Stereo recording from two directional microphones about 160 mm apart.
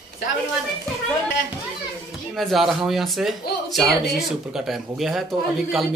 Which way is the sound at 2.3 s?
Centre (ahead or behind).